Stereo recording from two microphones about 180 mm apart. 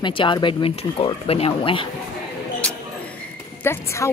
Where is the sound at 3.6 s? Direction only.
15° left (ahead or behind).